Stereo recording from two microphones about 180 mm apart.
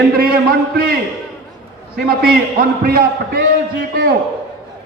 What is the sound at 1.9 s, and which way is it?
A man's voice, 60° right (ahead or behind).